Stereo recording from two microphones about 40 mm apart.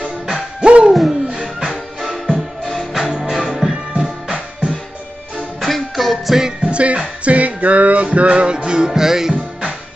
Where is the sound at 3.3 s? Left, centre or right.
Centre.